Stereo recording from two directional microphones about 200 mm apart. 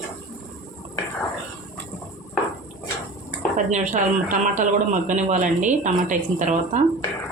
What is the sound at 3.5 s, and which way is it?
A woman's voice, 40° right (ahead or behind).